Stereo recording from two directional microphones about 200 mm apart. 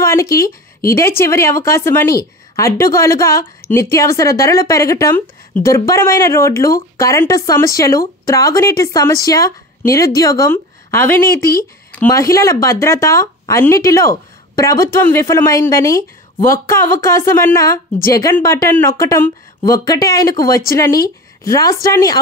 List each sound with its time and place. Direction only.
0.0 s speech: 15° left (ahead or behind)